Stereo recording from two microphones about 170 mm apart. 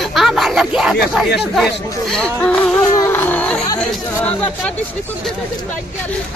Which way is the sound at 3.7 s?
10° left (ahead or behind).